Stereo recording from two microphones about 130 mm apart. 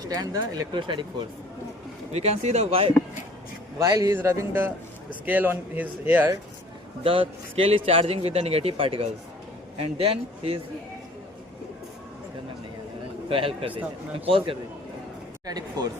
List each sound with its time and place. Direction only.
0.1 s speech: 30° right (ahead or behind)
2.1 s speech: 55° right (ahead or behind)
3.8 s speech: 25° right (ahead or behind)
7.0 s a man's voice: 45° right (ahead or behind)
13.2 s a man's voice: 45° right (ahead or behind)
15.4 s speech: 30° right (ahead or behind)